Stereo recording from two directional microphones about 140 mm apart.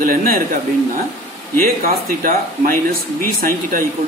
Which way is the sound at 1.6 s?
90° right.